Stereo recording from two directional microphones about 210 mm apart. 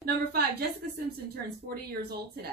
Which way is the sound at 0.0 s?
45° right (ahead or behind).